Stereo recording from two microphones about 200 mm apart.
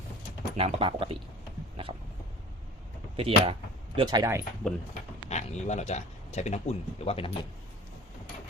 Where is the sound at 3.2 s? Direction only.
30° right (ahead or behind).